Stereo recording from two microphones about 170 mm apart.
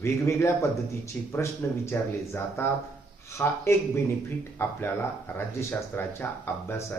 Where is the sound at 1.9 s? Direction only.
15° left (ahead or behind).